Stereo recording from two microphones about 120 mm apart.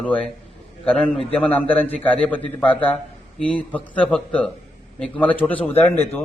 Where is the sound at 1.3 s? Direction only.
10° left (ahead or behind).